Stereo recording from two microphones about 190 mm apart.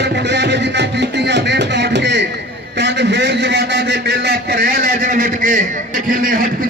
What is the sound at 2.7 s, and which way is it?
A man's voice, 65° right (ahead or behind).